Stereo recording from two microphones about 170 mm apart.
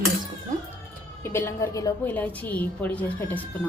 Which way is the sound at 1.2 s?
15° left (ahead or behind).